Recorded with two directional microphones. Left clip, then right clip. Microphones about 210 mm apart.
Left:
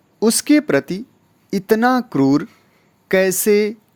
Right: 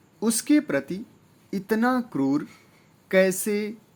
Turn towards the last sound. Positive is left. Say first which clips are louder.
# left 8 dB
turn(degrees=45)  # may be behind; listen again after turning